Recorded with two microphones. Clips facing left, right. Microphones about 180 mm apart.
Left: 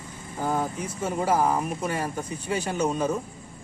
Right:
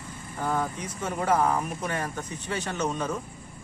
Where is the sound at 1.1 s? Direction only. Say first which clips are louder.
Left 1 dB; 10° left (ahead or behind).